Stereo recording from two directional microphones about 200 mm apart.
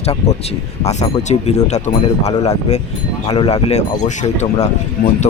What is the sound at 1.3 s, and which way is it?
Speech, 35° left (ahead or behind).